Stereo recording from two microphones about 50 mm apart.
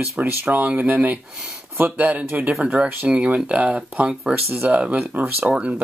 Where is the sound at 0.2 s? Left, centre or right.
Right.